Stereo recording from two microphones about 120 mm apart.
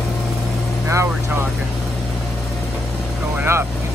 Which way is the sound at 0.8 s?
20° right (ahead or behind).